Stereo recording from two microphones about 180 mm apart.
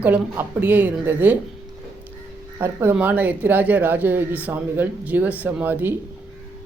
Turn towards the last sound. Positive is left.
turn(degrees=-10)  # may be behind; listen again after turning